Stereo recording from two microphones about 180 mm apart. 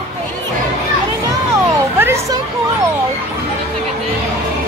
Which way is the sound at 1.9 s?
15° right (ahead or behind).